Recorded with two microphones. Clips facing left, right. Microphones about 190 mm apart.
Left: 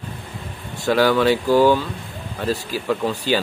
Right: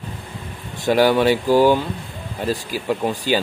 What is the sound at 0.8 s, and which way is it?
Speech, 15° right (ahead or behind).